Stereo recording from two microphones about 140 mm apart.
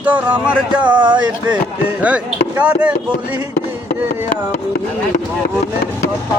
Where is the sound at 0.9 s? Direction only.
35° right (ahead or behind).